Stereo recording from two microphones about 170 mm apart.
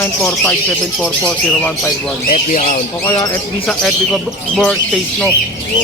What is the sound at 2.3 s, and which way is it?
Speech, 45° left (ahead or behind).